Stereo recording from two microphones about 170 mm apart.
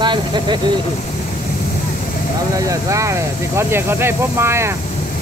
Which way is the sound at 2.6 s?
20° right (ahead or behind).